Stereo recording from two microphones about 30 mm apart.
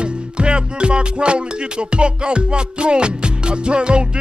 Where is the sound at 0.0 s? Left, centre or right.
Right.